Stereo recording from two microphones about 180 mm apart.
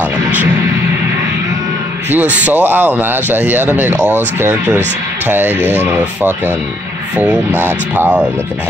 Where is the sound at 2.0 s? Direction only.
10° right (ahead or behind).